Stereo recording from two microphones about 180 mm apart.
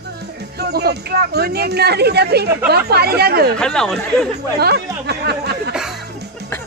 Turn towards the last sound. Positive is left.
turn(degrees=-5)  # may be behind; listen again after turning